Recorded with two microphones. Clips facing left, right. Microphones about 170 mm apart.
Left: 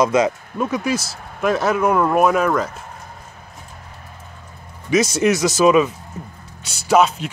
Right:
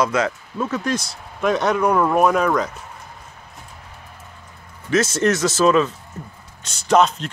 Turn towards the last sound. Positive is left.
turn(degrees=10)  # may be behind; listen again after turning